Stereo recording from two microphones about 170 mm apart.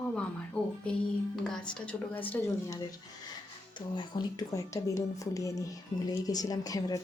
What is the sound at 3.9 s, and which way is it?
Speech, 25° left (ahead or behind).